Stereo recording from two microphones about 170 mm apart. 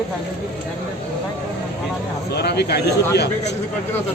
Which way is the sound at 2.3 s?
75° left (ahead or behind).